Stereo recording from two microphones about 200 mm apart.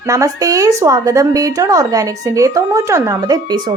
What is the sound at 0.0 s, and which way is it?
Speech, 15° right (ahead or behind).